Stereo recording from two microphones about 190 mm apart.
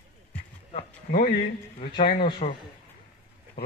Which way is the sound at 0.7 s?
45° left (ahead or behind).